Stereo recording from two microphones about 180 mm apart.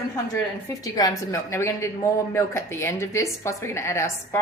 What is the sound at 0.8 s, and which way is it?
A woman's voice, 20° left (ahead or behind).